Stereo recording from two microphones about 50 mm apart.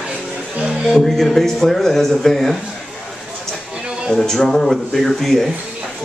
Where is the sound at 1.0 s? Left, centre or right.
Centre.